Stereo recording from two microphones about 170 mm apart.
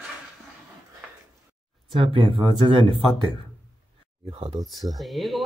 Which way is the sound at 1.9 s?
30° right (ahead or behind).